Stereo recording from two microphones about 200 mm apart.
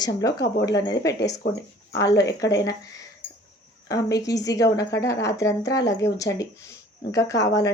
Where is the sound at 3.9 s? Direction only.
20° left (ahead or behind).